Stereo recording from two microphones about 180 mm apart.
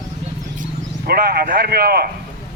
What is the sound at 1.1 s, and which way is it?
Speech, 55° right (ahead or behind).